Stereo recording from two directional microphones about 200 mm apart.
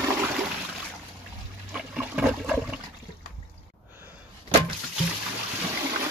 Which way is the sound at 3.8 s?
10° right (ahead or behind).